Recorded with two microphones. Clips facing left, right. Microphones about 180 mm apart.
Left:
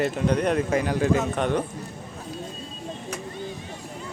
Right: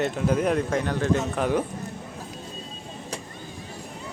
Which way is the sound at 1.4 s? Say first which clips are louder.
Even; 5° right (ahead or behind).